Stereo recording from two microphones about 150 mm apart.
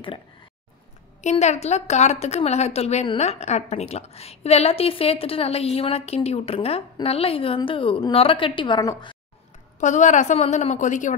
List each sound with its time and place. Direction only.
1.3 s a woman's voice: 50° left (ahead or behind); by 9.1 s 30° left (ahead or behind)
9.8 s a woman's voice: 55° left (ahead or behind)